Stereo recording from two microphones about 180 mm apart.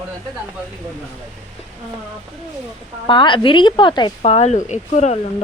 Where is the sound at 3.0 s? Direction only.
25° left (ahead or behind).